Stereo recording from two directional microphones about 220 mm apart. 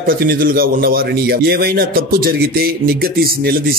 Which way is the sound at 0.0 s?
40° right (ahead or behind).